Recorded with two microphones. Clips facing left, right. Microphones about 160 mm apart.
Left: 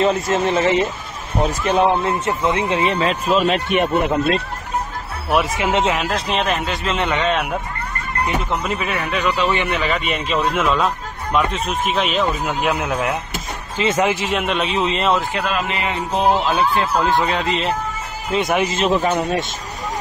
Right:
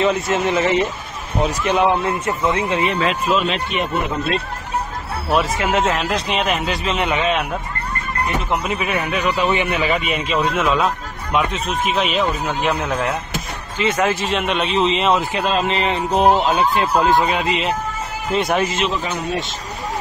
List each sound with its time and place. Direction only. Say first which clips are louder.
0.0 s speech: left 1 dB; 40° left (ahead or behind)
3.6 s speech: left 4 dB; 60° left (ahead or behind)
5.6 s speech: even; 25° left (ahead or behind)
6.1 s speech: even; centre (ahead or behind)
8.6 s speech: right 1 dB; 5° right (ahead or behind)
10.3 s speech: even; centre (ahead or behind)
13.8 s speech: even; 30° left (ahead or behind)
14.4 s speech: right 1 dB; centre (ahead or behind)
15.3 s speech: right 3 dB; 25° right (ahead or behind)
16.1 s speech: right 2 dB; 20° right (ahead or behind); by 18.6 s centre (ahead or behind)
18.7 s speech: left 4 dB; 45° left (ahead or behind)